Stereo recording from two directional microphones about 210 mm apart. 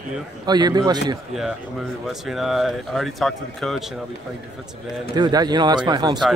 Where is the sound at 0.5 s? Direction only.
20° right (ahead or behind).